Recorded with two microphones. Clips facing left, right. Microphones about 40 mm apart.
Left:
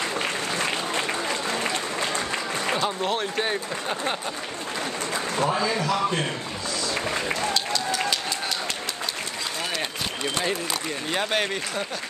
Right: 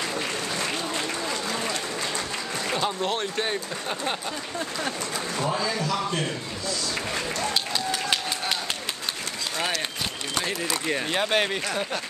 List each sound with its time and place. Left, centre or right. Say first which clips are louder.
2.8 s speech: left 1 dB; centre
5.5 s a man's voice: left 1 dB; left
11.1 s speech: even; centre